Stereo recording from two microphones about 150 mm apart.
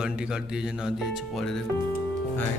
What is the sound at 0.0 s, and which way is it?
A man's voice, 5° right (ahead or behind).